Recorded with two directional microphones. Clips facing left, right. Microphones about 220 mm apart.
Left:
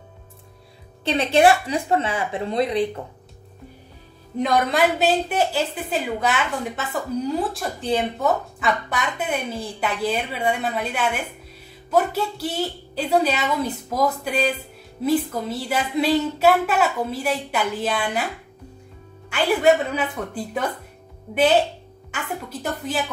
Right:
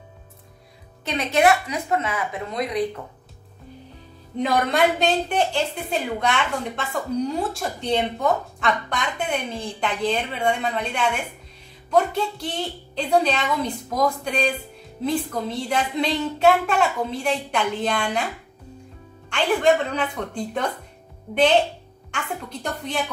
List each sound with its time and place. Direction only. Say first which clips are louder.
1.0 s a woman's voice: left 3 dB; 30° left (ahead or behind)
4.4 s a woman's voice: left 1 dB; centre (ahead or behind)
19.2 s a woman's voice: left 1 dB; 5° left (ahead or behind)